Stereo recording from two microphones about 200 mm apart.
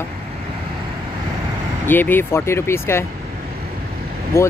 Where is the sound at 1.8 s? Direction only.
10° left (ahead or behind).